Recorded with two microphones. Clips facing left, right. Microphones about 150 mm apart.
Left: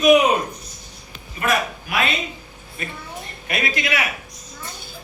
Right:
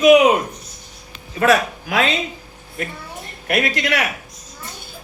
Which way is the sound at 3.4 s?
70° right (ahead or behind).